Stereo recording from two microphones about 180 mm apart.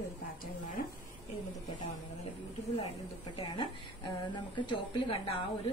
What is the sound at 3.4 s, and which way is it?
A woman's voice, 25° left (ahead or behind).